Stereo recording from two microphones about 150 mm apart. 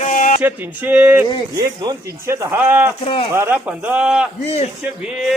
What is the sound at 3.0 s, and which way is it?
Speech, 40° left (ahead or behind).